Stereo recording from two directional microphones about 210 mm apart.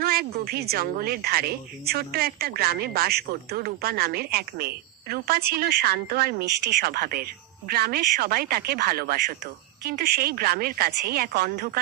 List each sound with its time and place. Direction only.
0.0 s a woman's voice: 45° right (ahead or behind)